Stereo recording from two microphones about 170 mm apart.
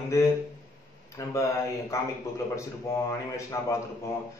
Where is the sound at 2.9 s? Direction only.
15° left (ahead or behind).